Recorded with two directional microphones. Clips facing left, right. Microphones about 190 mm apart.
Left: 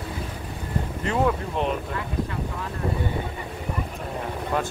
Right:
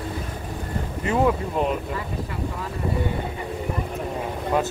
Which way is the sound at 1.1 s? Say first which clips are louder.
Right 3 dB; 5° right (ahead or behind).